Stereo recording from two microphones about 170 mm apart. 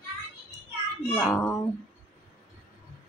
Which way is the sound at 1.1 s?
5° right (ahead or behind).